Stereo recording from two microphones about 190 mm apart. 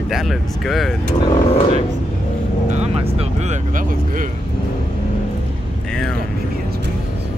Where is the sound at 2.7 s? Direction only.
35° right (ahead or behind).